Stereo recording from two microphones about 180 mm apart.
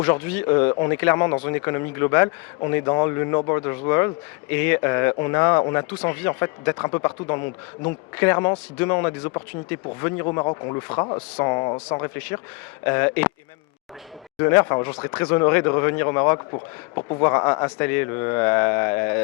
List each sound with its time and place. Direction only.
0.0 s speech: 10° left (ahead or behind)
10.3 s speech: 30° left (ahead or behind)
12.8 s speech: 15° left (ahead or behind)
14.3 s speech: 15° left (ahead or behind)
16.5 s speech: 30° left (ahead or behind)
17.2 s speech: 20° left (ahead or behind)